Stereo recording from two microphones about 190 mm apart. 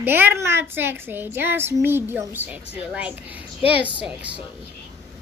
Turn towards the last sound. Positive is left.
turn(degrees=-5)  # may be behind; listen again after turning